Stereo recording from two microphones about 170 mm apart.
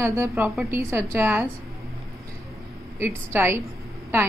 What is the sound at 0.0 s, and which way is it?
A woman's voice, 15° right (ahead or behind).